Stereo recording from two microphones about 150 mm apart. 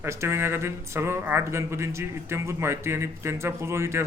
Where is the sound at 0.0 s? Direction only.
20° right (ahead or behind).